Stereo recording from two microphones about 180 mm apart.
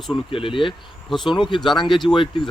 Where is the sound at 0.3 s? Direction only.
30° left (ahead or behind).